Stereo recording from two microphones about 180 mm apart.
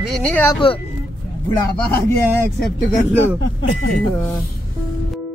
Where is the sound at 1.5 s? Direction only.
15° left (ahead or behind).